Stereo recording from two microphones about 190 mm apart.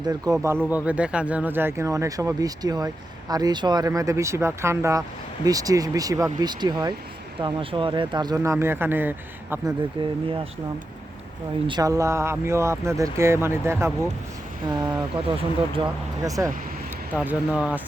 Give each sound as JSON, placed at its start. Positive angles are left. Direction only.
{"t": 0.0, "sound": "speech", "side_deg": -20}
{"t": 10.0, "sound": "speech", "side_deg": -25}
{"t": 11.7, "sound": "speech", "side_deg": -15}
{"t": 17.2, "sound": "speech", "side_deg": -5}